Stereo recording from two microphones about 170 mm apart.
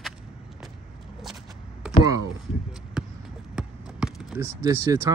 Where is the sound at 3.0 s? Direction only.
5° right (ahead or behind).